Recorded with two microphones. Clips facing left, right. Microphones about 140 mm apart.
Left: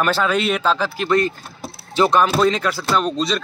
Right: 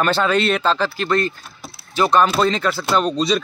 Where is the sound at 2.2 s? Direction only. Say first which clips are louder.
Even; 5° left (ahead or behind).